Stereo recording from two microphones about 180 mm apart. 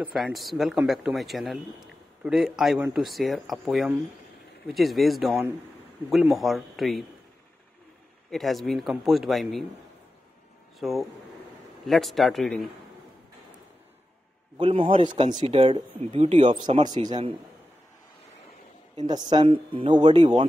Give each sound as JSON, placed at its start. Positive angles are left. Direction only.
{"t": 0.0, "sound": "speech", "side_deg": 0}
{"t": 8.3, "sound": "speech", "side_deg": 0}
{"t": 10.8, "sound": "speech", "side_deg": 0}
{"t": 14.6, "sound": "speech", "side_deg": -30}
{"t": 14.9, "sound": "speech", "side_deg": -45}
{"t": 15.4, "sound": "speech", "side_deg": -30}
{"t": 18.9, "sound": "speech", "side_deg": -25}